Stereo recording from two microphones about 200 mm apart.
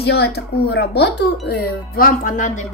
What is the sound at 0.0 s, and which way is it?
Speech, 55° left (ahead or behind).